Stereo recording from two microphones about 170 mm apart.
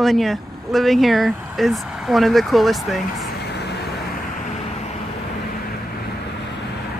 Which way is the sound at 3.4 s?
80° left.